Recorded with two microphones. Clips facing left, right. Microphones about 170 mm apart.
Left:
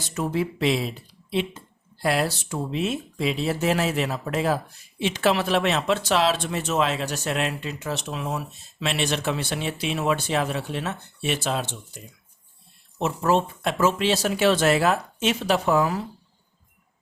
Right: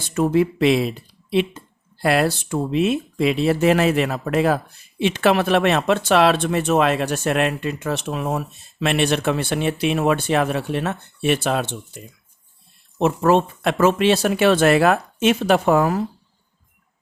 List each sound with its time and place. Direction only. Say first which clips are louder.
0.1 s speech: right 8 dB; 60° right (ahead or behind)
13.0 s speech: right 6 dB; 60° right (ahead or behind)